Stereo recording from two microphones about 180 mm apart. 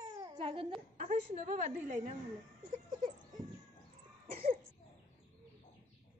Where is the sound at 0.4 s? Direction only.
30° right (ahead or behind).